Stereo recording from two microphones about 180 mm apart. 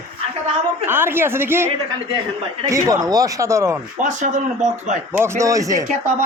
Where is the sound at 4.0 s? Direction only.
45° right (ahead or behind).